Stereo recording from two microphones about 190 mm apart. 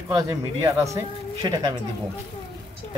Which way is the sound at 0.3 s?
15° right (ahead or behind).